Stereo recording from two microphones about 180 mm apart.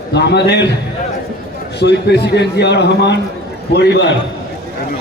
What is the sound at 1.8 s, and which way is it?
A man's voice, 70° left (ahead or behind).